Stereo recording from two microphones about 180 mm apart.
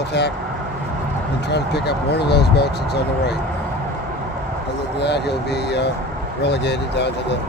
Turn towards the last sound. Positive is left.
turn(degrees=70)  # may be behind; listen again after turning